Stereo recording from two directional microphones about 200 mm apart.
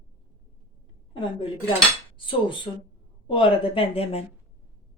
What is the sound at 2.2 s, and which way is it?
A woman's voice, 25° left (ahead or behind).